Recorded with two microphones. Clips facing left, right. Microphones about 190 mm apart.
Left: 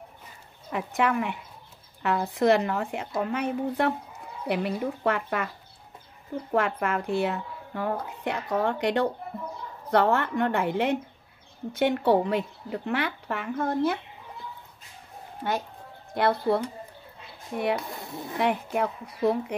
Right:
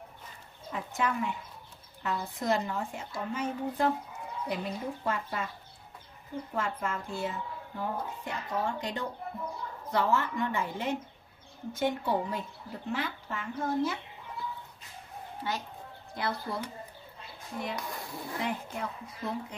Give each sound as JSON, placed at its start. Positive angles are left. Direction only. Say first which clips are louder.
{"t": 0.7, "sound": "a woman's voice", "louder": "left 6 dB", "side_deg": 70}
{"t": 6.5, "sound": "a woman's voice", "louder": "left 8 dB", "side_deg": 70}
{"t": 15.4, "sound": "a woman's voice", "louder": "left 7 dB", "side_deg": 50}
{"t": 17.7, "sound": "speech", "louder": "left 4 dB", "side_deg": 25}
{"t": 18.4, "sound": "a woman's voice", "louder": "left 10 dB", "side_deg": 65}